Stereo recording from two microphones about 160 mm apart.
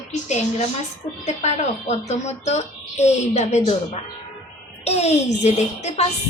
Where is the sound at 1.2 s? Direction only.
45° left (ahead or behind).